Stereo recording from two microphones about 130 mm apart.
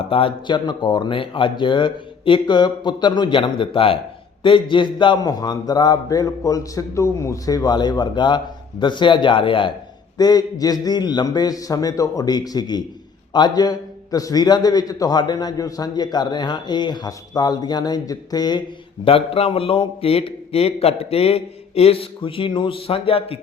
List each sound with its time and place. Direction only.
0.0 s a man's voice: 45° left (ahead or behind)
10.2 s a man's voice: 30° left (ahead or behind)
19.0 s a man's voice: 50° left (ahead or behind)